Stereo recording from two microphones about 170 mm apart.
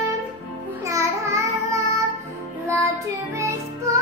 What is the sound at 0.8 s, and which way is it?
Child singing, 15° right (ahead or behind).